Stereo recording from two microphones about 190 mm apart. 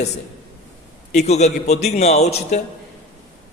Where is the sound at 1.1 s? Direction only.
35° left (ahead or behind).